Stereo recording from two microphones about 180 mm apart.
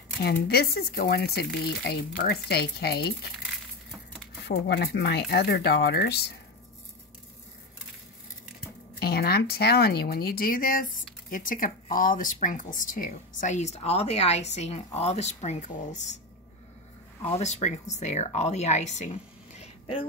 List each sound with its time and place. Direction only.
0.2 s speech: 60° left (ahead or behind)
4.5 s speech: 70° left (ahead or behind)
9.0 s a woman's voice: 60° left (ahead or behind); by 16.1 s 40° left (ahead or behind)
17.3 s speech: 40° left (ahead or behind)